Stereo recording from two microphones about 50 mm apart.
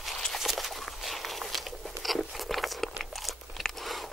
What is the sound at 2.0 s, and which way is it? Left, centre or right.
Crunch, centre.